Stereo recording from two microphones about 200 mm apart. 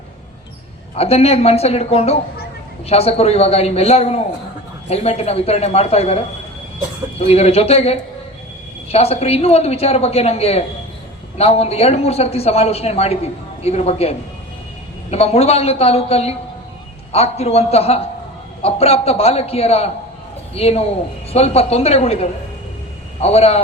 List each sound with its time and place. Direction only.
0.9 s a man's voice: 30° left (ahead or behind)
7.2 s a man's voice: 30° left (ahead or behind)